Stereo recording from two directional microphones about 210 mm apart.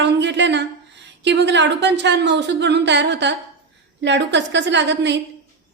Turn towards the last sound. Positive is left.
turn(degrees=-55)  # may be behind; listen again after turning